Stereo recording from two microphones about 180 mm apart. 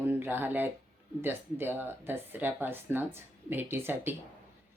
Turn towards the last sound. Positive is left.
turn(degrees=-10)  # may be behind; listen again after turning